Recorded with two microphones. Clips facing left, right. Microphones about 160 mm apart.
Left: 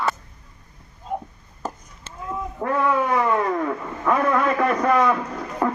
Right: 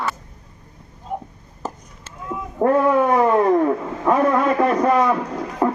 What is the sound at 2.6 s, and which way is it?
Cat, 35° right (ahead or behind).